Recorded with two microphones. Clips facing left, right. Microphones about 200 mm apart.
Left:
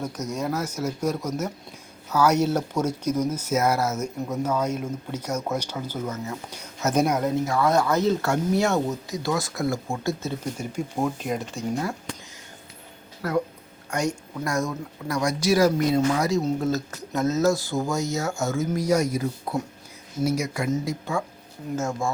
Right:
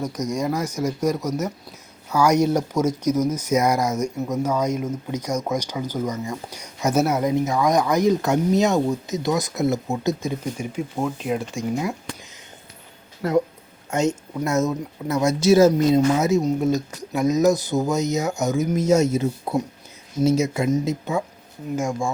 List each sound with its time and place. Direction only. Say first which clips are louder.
0.3 s speech: right 3 dB; 10° right (ahead or behind)
13.2 s speech: right 5 dB; 25° right (ahead or behind)